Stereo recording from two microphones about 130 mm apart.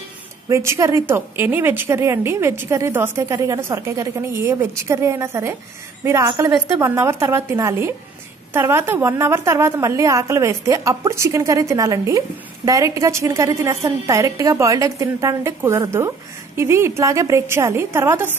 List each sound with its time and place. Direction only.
0.5 s a woman's voice: 25° right (ahead or behind)